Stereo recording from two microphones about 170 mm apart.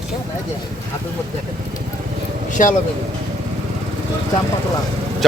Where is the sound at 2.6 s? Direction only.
50° left (ahead or behind).